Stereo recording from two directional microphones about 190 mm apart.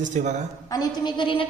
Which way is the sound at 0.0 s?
40° right (ahead or behind).